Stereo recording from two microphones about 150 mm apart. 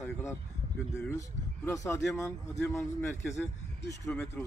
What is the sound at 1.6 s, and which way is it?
Speech, 20° left (ahead or behind).